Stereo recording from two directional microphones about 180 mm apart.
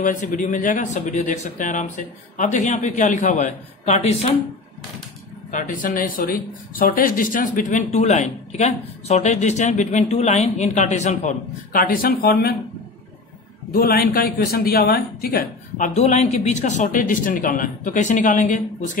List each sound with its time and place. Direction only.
0.0 s speech: 45° left (ahead or behind)
5.5 s speech: 45° left (ahead or behind)
13.7 s speech: 55° left (ahead or behind)